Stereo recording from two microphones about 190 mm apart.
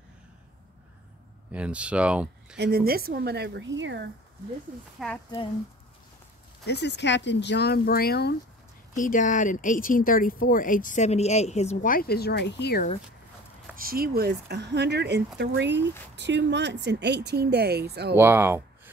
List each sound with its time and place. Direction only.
1.5 s speech: 5° right (ahead or behind)
2.5 s speech: 60° right (ahead or behind)
5.0 s speech: centre (ahead or behind)
6.6 s speech: 60° left (ahead or behind)
8.9 s speech: 45° left (ahead or behind); by 12.8 s 60° left (ahead or behind)
13.7 s speech: 50° right (ahead or behind)
18.1 s speech: 10° right (ahead or behind)